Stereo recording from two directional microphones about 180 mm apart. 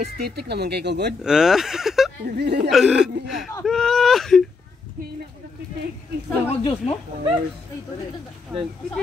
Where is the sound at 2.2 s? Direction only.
65° right (ahead or behind).